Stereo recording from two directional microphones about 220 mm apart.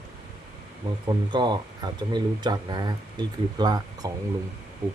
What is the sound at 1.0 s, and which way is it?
Speech, 20° right (ahead or behind).